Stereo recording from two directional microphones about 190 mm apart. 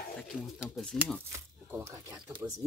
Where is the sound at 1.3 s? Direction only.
15° right (ahead or behind).